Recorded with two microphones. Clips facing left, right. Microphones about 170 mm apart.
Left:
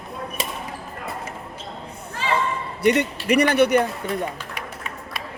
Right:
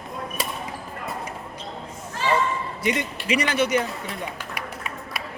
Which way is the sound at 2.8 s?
60° left (ahead or behind).